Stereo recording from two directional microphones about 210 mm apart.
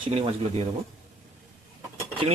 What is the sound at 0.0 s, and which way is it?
Dishes, 30° right (ahead or behind).